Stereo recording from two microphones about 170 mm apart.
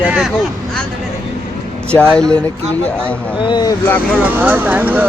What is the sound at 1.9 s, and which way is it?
Speech, 5° left (ahead or behind).